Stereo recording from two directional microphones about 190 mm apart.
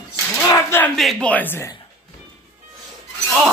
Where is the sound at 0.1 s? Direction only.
15° left (ahead or behind).